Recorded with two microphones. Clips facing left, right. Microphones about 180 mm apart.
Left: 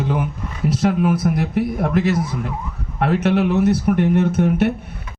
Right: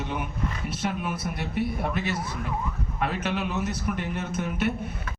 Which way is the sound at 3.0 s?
75° left (ahead or behind).